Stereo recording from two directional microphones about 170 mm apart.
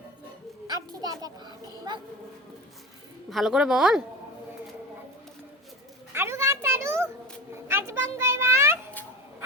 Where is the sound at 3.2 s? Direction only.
Centre (ahead or behind).